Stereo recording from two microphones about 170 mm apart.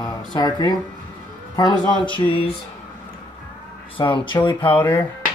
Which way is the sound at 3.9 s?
30° left (ahead or behind).